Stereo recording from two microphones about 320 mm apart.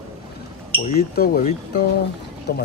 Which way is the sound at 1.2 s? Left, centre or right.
Left.